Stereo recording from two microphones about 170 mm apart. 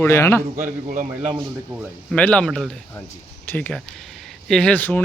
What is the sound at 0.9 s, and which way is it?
Speech, 50° right (ahead or behind).